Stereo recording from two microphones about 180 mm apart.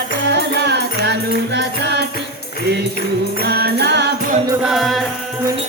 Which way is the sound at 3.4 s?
60° right (ahead or behind).